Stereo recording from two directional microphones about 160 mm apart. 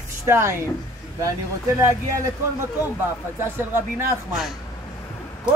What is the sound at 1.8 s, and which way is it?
A man's voice, 20° right (ahead or behind).